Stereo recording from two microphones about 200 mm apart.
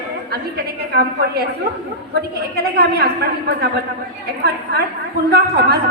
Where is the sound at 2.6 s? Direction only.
50° right (ahead or behind).